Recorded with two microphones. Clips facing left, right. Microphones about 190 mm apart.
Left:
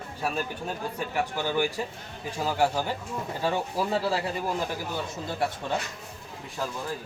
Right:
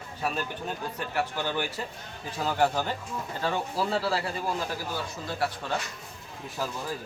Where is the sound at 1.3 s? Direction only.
10° left (ahead or behind).